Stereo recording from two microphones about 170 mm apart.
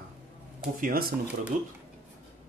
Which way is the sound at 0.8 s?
60° right (ahead or behind).